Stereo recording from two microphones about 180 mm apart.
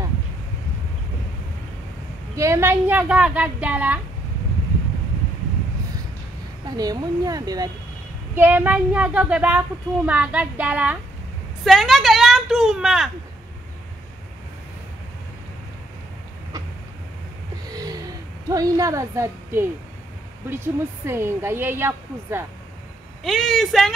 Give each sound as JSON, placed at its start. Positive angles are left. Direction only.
{"t": 2.3, "sound": "speech", "side_deg": -15}
{"t": 6.6, "sound": "a woman's voice", "side_deg": -20}
{"t": 18.5, "sound": "speech", "side_deg": -20}
{"t": 23.2, "sound": "speech", "side_deg": 0}